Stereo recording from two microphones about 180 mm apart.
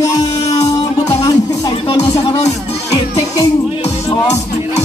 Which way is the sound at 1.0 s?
20° left (ahead or behind).